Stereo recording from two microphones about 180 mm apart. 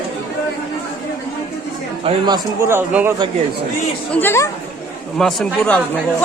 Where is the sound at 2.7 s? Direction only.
10° right (ahead or behind).